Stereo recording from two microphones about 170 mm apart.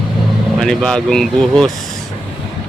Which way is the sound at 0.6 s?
5° left (ahead or behind).